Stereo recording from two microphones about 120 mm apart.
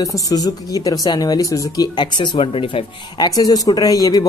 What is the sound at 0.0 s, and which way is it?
Speech, 30° left (ahead or behind).